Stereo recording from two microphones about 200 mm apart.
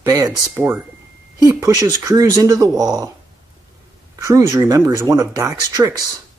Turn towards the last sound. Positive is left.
turn(degrees=-15)  # may be behind; listen again after turning